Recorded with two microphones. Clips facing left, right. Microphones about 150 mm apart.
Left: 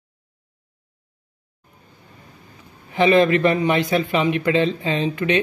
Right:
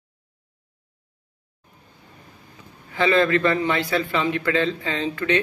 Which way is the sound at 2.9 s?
20° left (ahead or behind).